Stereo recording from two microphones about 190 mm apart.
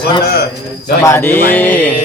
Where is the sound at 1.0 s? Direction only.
15° left (ahead or behind).